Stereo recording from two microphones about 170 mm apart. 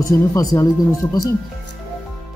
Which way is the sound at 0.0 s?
20° left (ahead or behind).